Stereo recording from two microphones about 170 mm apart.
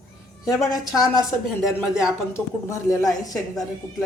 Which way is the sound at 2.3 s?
15° left (ahead or behind).